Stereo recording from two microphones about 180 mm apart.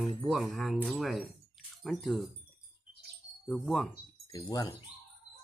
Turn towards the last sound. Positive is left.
turn(degrees=20)  # may be behind; listen again after turning